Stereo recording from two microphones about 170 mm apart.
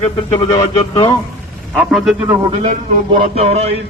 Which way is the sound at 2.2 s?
20° right (ahead or behind).